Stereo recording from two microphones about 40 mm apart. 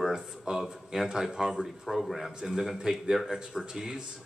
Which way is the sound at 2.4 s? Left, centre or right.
Centre.